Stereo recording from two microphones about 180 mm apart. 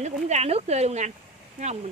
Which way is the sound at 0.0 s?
35° right (ahead or behind).